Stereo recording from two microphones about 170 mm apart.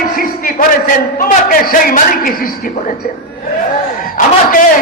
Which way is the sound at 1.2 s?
55° left (ahead or behind).